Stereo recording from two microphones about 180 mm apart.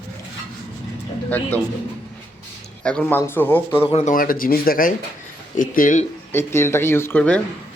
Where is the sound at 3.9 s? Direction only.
45° left (ahead or behind).